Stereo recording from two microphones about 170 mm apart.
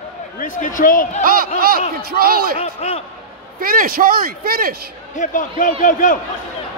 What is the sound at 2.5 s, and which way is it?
Speech, 40° left (ahead or behind).